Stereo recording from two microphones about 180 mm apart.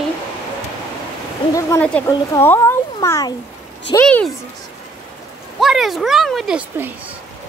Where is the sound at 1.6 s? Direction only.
10° left (ahead or behind).